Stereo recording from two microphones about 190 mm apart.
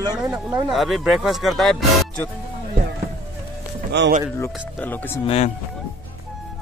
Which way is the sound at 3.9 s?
65° right (ahead or behind).